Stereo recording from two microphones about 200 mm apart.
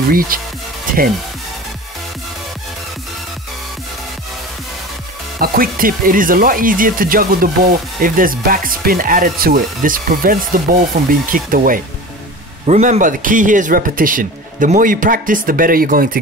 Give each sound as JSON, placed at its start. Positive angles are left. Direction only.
{"t": 0.1, "sound": "speech", "side_deg": -45}
{"t": 5.4, "sound": "speech", "side_deg": -45}
{"t": 12.6, "sound": "speech", "side_deg": -35}